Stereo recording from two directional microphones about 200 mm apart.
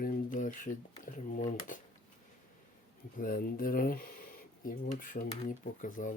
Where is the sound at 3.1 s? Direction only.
45° left (ahead or behind).